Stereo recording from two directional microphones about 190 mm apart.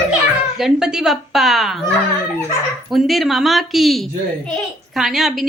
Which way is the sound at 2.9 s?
Centre (ahead or behind).